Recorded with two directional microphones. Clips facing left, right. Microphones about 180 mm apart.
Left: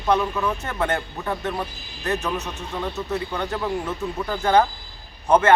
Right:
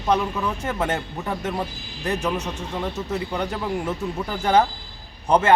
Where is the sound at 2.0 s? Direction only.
15° right (ahead or behind).